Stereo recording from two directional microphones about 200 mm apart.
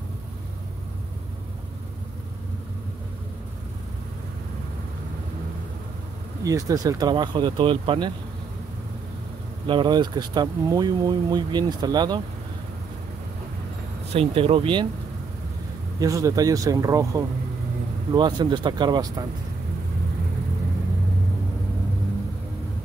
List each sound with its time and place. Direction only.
6.4 s speech: 15° right (ahead or behind)
9.7 s speech: 25° right (ahead or behind)
14.1 s speech: 30° right (ahead or behind)
16.0 s speech: 15° right (ahead or behind)